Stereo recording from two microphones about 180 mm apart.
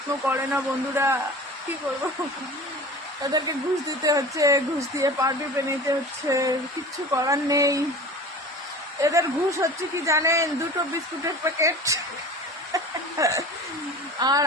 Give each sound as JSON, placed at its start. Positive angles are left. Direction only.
{"t": 0.3, "sound": "speech", "side_deg": -10}
{"t": 3.3, "sound": "speech", "side_deg": -20}
{"t": 9.0, "sound": "speech", "side_deg": -15}